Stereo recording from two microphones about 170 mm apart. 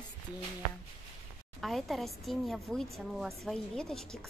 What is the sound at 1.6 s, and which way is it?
A woman's voice, centre (ahead or behind).